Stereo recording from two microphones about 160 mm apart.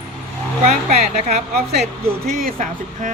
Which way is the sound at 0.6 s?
45° right (ahead or behind).